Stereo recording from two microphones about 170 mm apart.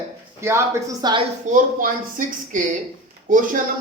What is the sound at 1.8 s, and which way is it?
A woman's voice, 50° right (ahead or behind).